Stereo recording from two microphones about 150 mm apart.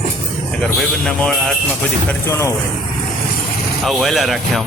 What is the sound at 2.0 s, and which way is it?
Speech, 15° left (ahead or behind).